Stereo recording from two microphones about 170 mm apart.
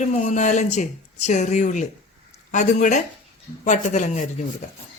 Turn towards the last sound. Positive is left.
turn(degrees=45)  # may be behind; listen again after turning